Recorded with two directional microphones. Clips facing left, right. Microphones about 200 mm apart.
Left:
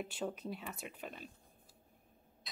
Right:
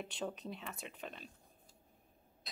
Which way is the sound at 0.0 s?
5° left (ahead or behind).